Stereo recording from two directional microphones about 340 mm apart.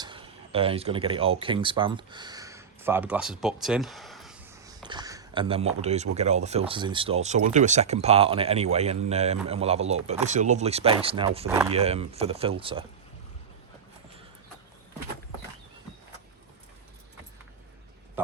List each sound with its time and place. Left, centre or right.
0.0 s speech: centre
11.8 s speech: centre